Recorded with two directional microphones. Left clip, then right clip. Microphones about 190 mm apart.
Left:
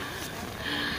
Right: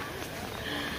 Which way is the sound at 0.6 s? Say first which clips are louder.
Left 5 dB; 20° left (ahead or behind).